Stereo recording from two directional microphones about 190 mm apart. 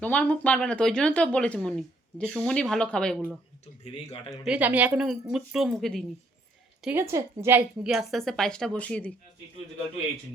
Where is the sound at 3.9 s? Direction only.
30° left (ahead or behind).